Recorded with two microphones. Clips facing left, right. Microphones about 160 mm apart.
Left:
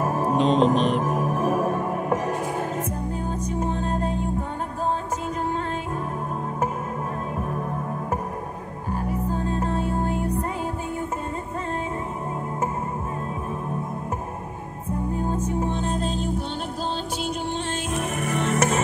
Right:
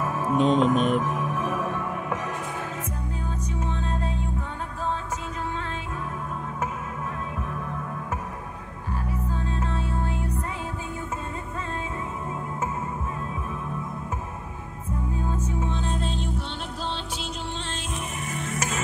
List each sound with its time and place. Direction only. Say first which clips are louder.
0.0 s music: left 2 dB; 40° left (ahead or behind)
3.4 s music: left 5 dB; 50° left (ahead or behind)
8.9 s music: left 5 dB; 45° left (ahead or behind)
15.1 s music: left 4 dB; 45° left (ahead or behind)
17.9 s music: left 9 dB; 65° left (ahead or behind)